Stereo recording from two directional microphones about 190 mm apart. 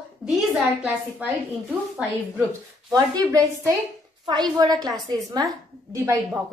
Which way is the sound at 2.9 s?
20° right (ahead or behind).